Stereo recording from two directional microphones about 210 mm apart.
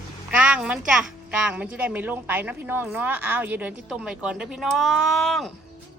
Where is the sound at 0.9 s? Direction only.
5° right (ahead or behind).